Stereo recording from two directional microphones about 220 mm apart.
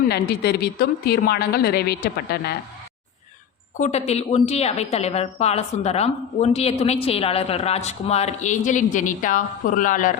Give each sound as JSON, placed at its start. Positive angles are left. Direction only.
{"t": 0.0, "sound": "a woman's voice", "side_deg": 45}
{"t": 3.8, "sound": "a woman's voice", "side_deg": 30}